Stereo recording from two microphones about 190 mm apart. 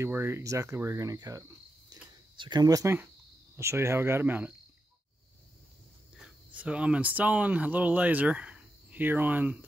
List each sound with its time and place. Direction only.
0.0 s speech: 15° right (ahead or behind)
1.9 s a sound: 25° right (ahead or behind)
3.5 s speech: 15° right (ahead or behind)
6.1 s speech: 5° right (ahead or behind)